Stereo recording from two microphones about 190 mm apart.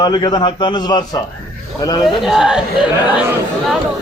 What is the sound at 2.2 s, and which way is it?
A man's voice, centre (ahead or behind).